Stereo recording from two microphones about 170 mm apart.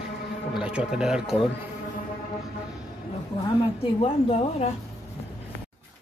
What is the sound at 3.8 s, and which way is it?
Speech, 35° left (ahead or behind).